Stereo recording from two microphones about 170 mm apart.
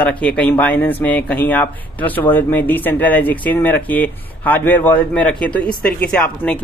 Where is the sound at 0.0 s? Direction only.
5° left (ahead or behind).